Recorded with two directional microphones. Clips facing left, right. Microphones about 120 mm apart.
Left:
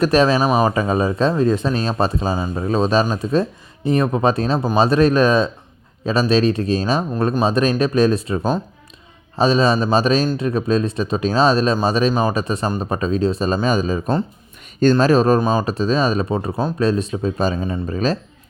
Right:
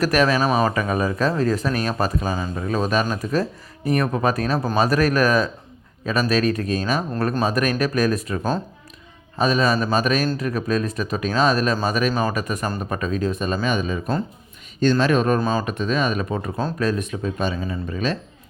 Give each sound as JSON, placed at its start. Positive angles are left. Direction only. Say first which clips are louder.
{"t": 0.0, "sound": "speech", "louder": "left 4 dB", "side_deg": 25}
{"t": 15.4, "sound": "speech", "louder": "left 4 dB", "side_deg": 20}
{"t": 15.6, "sound": "speech", "louder": "left 4 dB", "side_deg": 30}